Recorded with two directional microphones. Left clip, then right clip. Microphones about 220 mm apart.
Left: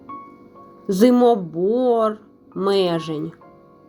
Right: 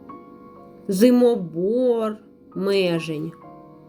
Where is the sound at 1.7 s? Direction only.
25° right (ahead or behind).